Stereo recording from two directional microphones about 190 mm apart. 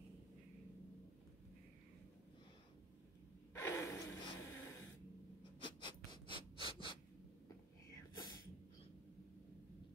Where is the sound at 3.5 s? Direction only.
15° left (ahead or behind).